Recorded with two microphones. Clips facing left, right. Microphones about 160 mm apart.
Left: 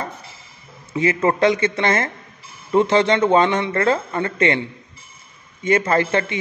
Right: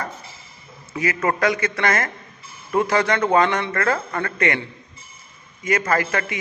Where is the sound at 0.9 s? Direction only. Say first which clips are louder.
Left 4 dB; 25° left (ahead or behind).